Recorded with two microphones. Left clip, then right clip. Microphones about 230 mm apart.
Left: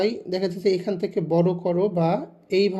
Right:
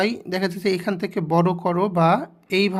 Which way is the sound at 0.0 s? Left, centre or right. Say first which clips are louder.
Right 1 dB; right.